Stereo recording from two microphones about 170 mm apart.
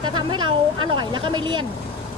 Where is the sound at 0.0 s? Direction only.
25° right (ahead or behind).